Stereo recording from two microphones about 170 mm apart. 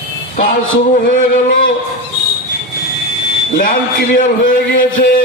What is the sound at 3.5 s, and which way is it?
A man's voice, 50° left (ahead or behind).